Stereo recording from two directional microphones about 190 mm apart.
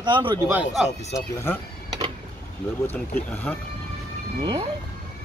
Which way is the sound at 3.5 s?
10° left (ahead or behind).